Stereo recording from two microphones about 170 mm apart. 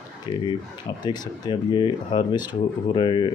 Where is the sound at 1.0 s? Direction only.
25° left (ahead or behind).